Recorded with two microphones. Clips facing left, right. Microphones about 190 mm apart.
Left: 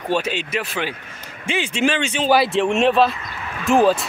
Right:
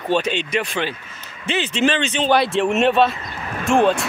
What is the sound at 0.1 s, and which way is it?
Speech, 5° left (ahead or behind).